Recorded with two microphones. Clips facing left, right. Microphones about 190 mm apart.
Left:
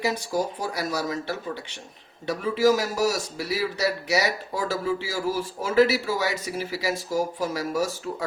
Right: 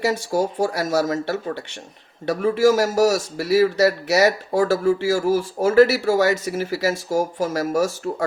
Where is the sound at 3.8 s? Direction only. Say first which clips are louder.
Right 8 dB; 70° right (ahead or behind).